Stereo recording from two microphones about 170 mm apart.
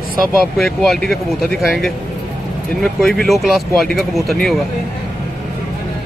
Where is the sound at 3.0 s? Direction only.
Centre (ahead or behind).